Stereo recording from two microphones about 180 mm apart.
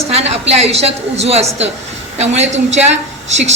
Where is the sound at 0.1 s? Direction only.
35° right (ahead or behind).